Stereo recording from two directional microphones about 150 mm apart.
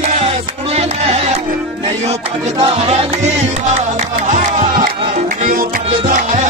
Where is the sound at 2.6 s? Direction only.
40° right (ahead or behind); by 4.9 s 55° right (ahead or behind).